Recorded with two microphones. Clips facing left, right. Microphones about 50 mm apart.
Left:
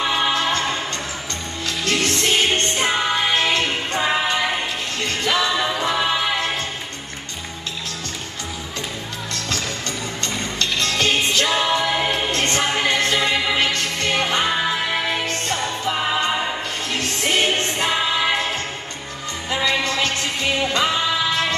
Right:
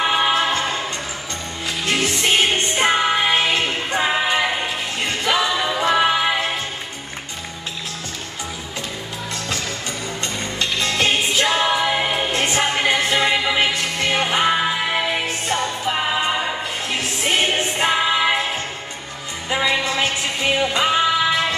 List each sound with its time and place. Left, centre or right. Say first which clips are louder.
0.0 s music: right 2 dB; centre
1.9 s music: right 1 dB; centre
5.5 s music: even; centre
5.8 s music: right 3 dB; centre
10.2 s music: even; centre